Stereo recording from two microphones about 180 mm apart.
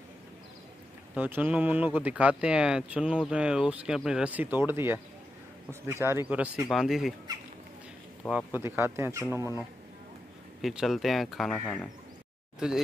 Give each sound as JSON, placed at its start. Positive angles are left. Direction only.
{"t": 1.1, "sound": "speech", "side_deg": -10}
{"t": 8.3, "sound": "speech", "side_deg": -10}
{"t": 10.6, "sound": "speech", "side_deg": 0}
{"t": 12.5, "sound": "speech", "side_deg": -5}